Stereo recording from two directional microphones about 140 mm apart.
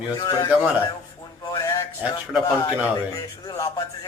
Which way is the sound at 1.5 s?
30° left (ahead or behind).